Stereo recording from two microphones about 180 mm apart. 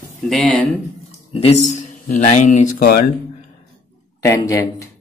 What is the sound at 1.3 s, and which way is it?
Speech, 35° left (ahead or behind).